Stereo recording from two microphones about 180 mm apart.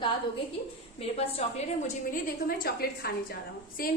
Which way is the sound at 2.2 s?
55° left (ahead or behind).